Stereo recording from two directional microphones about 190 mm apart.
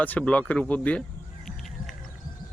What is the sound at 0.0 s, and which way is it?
Speech, 10° left (ahead or behind).